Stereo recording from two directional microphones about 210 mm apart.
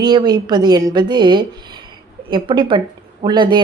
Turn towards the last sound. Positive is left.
turn(degrees=-20)  # may be behind; listen again after turning